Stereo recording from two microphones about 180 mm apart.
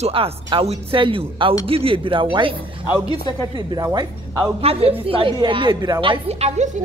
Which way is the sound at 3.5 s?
20° right (ahead or behind).